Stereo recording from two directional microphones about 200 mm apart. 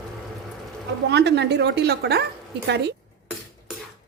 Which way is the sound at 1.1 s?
55° right (ahead or behind).